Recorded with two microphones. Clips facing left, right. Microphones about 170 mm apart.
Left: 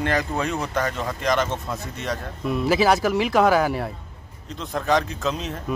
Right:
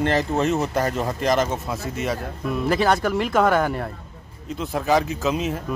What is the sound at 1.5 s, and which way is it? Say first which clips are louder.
Speech: right 2 dB; 5° right (ahead or behind).